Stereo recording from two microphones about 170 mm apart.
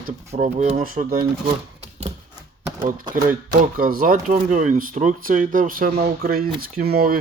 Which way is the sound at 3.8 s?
55° right (ahead or behind).